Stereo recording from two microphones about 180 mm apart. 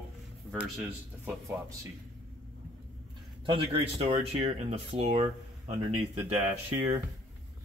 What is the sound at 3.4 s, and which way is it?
Speech, 30° right (ahead or behind).